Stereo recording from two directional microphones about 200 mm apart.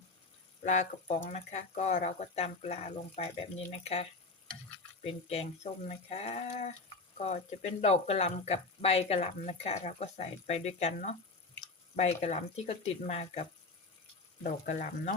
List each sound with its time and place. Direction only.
0.6 s speech: 35° left (ahead or behind)
5.0 s speech: 30° left (ahead or behind)